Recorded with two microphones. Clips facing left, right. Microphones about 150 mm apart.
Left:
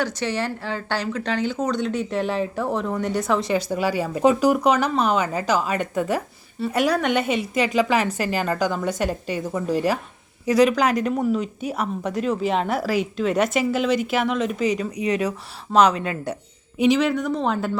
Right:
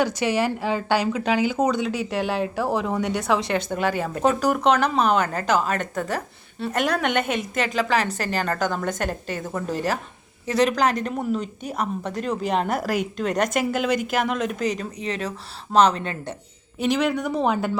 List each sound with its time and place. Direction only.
0.0 s a woman's voice: 10° right (ahead or behind); by 8.6 s 5° left (ahead or behind)
9.7 s speech: 45° right (ahead or behind)
10.4 s a woman's voice: 10° left (ahead or behind)